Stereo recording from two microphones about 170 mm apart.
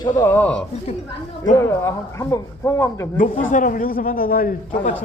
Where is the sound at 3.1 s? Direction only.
50° left (ahead or behind).